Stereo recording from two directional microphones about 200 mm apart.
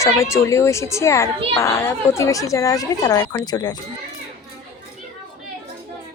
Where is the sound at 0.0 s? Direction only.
15° left (ahead or behind).